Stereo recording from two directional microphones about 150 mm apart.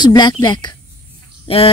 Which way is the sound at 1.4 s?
40° left (ahead or behind).